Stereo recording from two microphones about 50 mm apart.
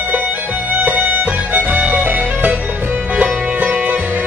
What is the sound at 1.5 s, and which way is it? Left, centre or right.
Music, right.